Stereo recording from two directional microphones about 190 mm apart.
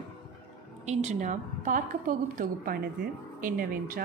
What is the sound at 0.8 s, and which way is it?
A woman's voice, 35° right (ahead or behind).